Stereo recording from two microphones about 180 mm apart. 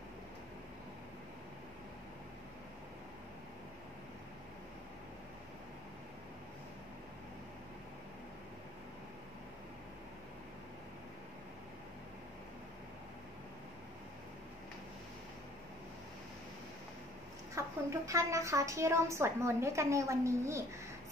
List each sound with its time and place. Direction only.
17.6 s a woman's voice: 15° right (ahead or behind)